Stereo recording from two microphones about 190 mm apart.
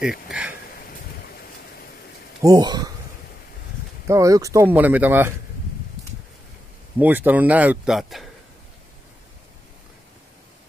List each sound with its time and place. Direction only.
0.0 s a sound: 5° right (ahead or behind)
2.4 s speech: 20° right (ahead or behind)
4.1 s speech: 15° right (ahead or behind)
7.0 s speech: 10° right (ahead or behind)